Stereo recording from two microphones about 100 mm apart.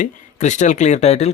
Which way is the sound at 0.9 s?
90° left.